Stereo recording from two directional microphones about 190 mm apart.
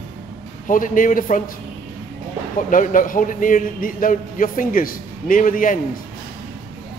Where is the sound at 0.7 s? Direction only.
45° left (ahead or behind).